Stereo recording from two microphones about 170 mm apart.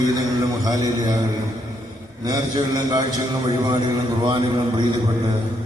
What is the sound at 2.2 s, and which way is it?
Speech, 20° right (ahead or behind).